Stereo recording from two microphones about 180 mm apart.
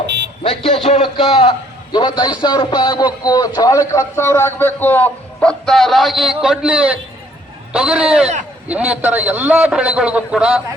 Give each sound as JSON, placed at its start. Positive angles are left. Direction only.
{"t": 0.4, "sound": "a man's voice", "side_deg": 30}